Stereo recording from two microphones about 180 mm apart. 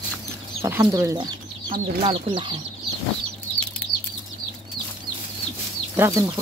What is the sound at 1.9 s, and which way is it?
Speech, 30° right (ahead or behind).